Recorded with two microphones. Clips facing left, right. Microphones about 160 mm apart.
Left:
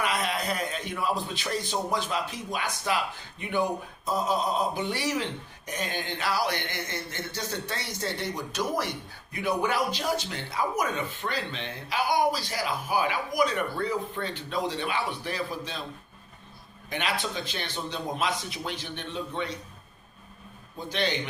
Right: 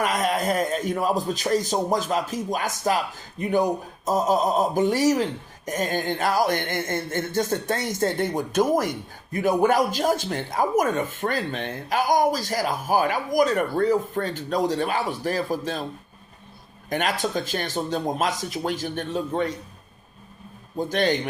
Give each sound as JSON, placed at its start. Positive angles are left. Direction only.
{"t": 0.0, "sound": "a man's voice", "side_deg": -45}
{"t": 16.9, "sound": "a man's voice", "side_deg": -45}
{"t": 20.7, "sound": "a man's voice", "side_deg": -45}